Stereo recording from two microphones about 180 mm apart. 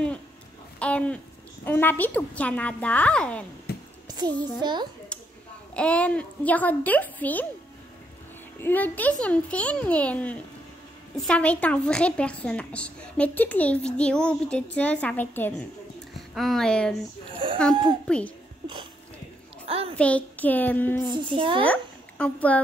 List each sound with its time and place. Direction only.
0.7 s a woman's voice: 5° left (ahead or behind)
3.7 s a sound: 60° left (ahead or behind)
4.1 s a child's voice: 25° right (ahead or behind)
5.1 s a sound: 5° left (ahead or behind)
5.8 s a woman's voice: 5° left (ahead or behind)
8.5 s a woman's voice: 10° left (ahead or behind)
17.4 s a child's voice: 30° right (ahead or behind)
18.0 s speech: 5° left (ahead or behind)
20.0 s a woman's voice: 10° left (ahead or behind)
21.1 s a child's voice: 30° right (ahead or behind)
22.2 s a woman's voice: 10° left (ahead or behind)